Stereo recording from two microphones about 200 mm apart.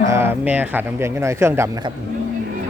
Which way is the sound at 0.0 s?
15° right (ahead or behind).